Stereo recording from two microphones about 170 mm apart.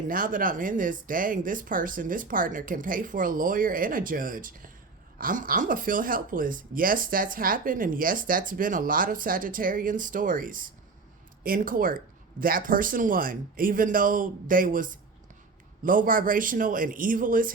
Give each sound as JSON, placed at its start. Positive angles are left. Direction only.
{"t": 0.1, "sound": "speech", "side_deg": -55}